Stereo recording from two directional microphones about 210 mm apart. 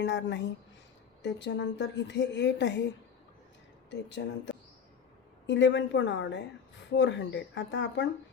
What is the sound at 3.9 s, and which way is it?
A woman's voice, 60° left (ahead or behind).